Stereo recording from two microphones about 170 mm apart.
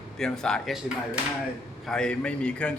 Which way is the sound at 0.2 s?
5° left (ahead or behind).